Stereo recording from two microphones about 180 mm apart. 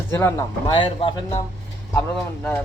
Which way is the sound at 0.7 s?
30° left (ahead or behind).